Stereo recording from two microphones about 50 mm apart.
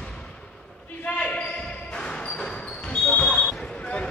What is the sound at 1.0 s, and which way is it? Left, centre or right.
Basketball bounce, left.